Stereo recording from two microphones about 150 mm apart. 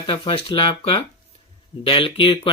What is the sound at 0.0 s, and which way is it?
Speech, 35° left (ahead or behind).